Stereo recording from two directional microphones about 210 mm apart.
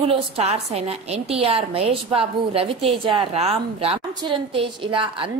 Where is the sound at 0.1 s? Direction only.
30° right (ahead or behind).